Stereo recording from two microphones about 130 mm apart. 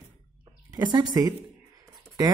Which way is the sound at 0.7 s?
35° right (ahead or behind).